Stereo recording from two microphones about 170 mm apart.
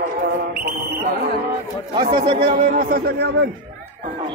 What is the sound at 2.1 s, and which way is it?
Speech, 35° right (ahead or behind).